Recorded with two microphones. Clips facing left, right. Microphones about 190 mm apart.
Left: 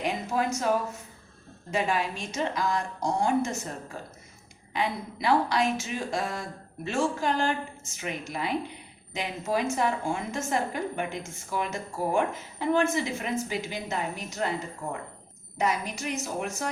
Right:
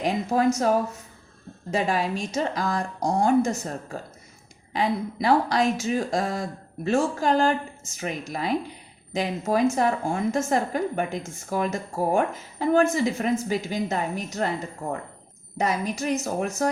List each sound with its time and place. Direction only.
0.0 s a woman's voice: 40° right (ahead or behind)
1.7 s a woman's voice: 35° right (ahead or behind)
4.7 s a woman's voice: 40° right (ahead or behind)
15.5 s a woman's voice: 40° right (ahead or behind)